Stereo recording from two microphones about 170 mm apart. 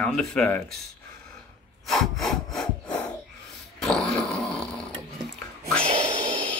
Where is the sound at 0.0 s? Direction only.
5° left (ahead or behind).